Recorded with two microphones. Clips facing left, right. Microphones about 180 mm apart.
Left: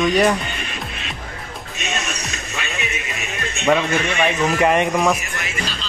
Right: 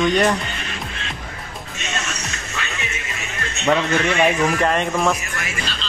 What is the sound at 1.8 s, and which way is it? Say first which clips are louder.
Music: left 2 dB; 15° left (ahead or behind).